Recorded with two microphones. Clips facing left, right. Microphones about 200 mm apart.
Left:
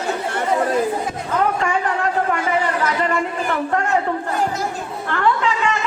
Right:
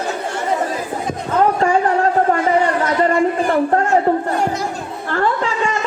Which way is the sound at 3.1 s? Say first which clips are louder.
Right 6 dB; 35° right (ahead or behind).